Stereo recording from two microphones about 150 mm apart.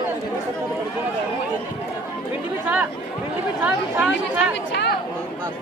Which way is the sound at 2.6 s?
10° right (ahead or behind).